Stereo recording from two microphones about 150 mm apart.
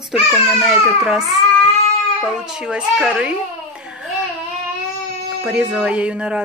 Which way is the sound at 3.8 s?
5° right (ahead or behind).